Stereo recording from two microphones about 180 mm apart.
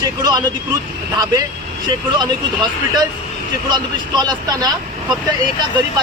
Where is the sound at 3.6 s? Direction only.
25° right (ahead or behind).